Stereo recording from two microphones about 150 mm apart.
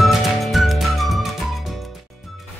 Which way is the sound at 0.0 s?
Centre (ahead or behind).